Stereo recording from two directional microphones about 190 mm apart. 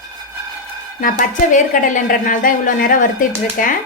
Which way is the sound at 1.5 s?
40° left (ahead or behind).